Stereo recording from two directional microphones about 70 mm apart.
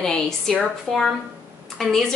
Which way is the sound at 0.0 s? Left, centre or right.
Centre.